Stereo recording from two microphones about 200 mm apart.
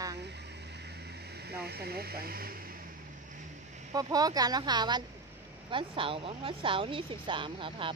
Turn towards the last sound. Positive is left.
turn(degrees=-25)  # may be behind; listen again after turning